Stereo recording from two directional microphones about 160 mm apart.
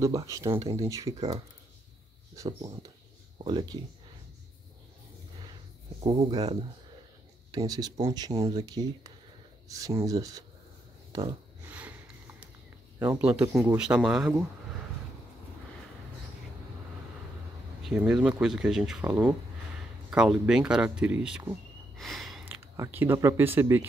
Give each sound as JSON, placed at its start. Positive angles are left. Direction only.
{"t": 0.0, "sound": "speech", "side_deg": -20}
{"t": 5.9, "sound": "speech", "side_deg": -30}
{"t": 11.1, "sound": "a sound", "side_deg": -25}
{"t": 11.6, "sound": "sniff", "side_deg": -10}
{"t": 13.0, "sound": "speech", "side_deg": -10}
{"t": 17.8, "sound": "speech", "side_deg": -5}
{"t": 21.9, "sound": "a sound", "side_deg": 0}
{"t": 22.4, "sound": "speech", "side_deg": -15}